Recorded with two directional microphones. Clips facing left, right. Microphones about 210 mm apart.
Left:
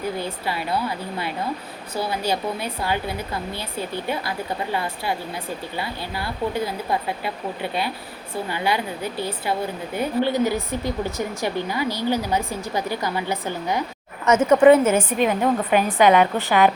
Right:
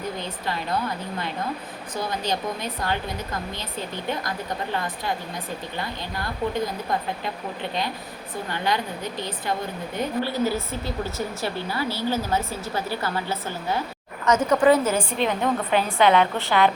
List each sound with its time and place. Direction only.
0.2 s speech: 10° left (ahead or behind); by 15.0 s 25° left (ahead or behind)
15.2 s speech: 10° left (ahead or behind)